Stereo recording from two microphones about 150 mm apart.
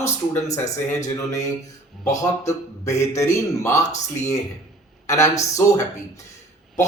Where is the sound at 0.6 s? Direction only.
50° left (ahead or behind).